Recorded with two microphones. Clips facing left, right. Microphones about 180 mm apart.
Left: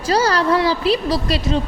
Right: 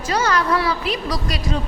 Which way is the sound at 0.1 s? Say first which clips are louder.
Left 3 dB; 30° left (ahead or behind).